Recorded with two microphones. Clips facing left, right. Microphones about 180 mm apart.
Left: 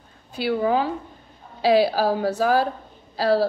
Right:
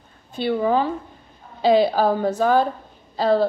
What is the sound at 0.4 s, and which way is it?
A woman's voice, 10° left (ahead or behind).